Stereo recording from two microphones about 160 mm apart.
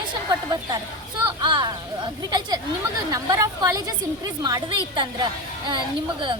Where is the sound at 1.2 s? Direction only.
30° right (ahead or behind).